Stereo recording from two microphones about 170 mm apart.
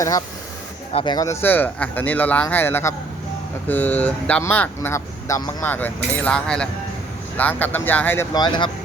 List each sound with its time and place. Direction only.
0.9 s speech: 25° left (ahead or behind)
8.3 s speech: 25° left (ahead or behind)